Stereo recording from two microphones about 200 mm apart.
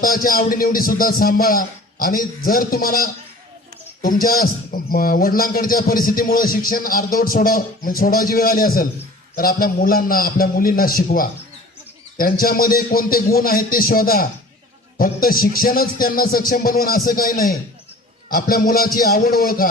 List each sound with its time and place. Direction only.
0.0 s speech: 45° left (ahead or behind)